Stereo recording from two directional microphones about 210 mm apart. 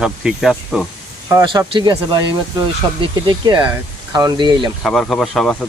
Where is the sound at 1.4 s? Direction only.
20° right (ahead or behind).